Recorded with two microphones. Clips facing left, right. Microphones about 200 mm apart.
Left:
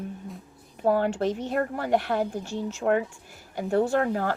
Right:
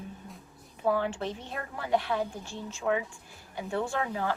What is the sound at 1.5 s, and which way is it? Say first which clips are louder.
Speech: left 2 dB; 55° left (ahead or behind).